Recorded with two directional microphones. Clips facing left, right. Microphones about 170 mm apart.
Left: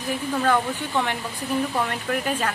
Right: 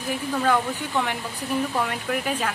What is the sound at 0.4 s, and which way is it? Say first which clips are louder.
A woman's voice: even; 5° right (ahead or behind).